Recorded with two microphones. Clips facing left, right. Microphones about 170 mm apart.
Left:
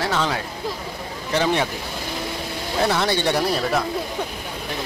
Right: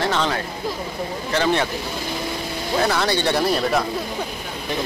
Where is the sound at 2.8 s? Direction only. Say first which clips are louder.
Left 2 dB; 20° left (ahead or behind).